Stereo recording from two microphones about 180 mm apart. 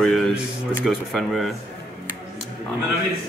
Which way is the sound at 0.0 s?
Centre (ahead or behind).